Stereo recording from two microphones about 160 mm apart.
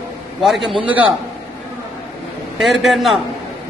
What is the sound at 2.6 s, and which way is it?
Speech, centre (ahead or behind).